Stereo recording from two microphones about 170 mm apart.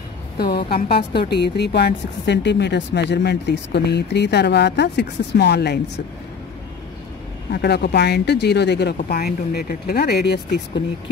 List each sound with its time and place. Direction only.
0.9 s a woman's voice: 70° left (ahead or behind)
7.5 s speech: 75° left (ahead or behind)
8.9 s speech: 65° left (ahead or behind)